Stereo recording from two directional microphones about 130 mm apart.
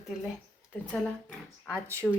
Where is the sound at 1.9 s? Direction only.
20° right (ahead or behind).